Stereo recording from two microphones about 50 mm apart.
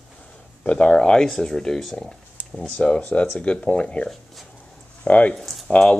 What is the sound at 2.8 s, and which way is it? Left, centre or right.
Speech, left.